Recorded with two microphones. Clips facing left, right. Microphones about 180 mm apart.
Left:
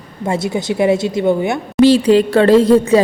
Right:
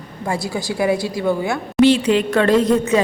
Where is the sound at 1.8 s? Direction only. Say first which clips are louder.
Left 4 dB; 35° left (ahead or behind).